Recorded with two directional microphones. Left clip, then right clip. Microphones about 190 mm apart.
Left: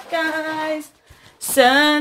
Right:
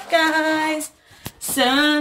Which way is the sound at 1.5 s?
40° left (ahead or behind).